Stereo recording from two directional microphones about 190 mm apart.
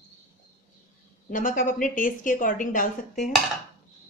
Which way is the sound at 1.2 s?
45° left (ahead or behind).